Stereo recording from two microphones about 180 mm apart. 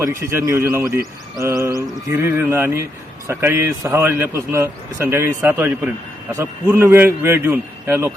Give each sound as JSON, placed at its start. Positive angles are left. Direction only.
{"t": 0.2, "sound": "a man's voice", "side_deg": -15}